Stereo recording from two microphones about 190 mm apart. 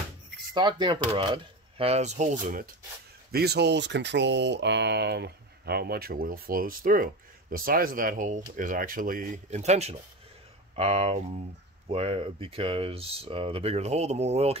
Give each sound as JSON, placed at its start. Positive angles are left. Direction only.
{"t": 0.6, "sound": "speech", "side_deg": -25}
{"t": 3.3, "sound": "speech", "side_deg": -55}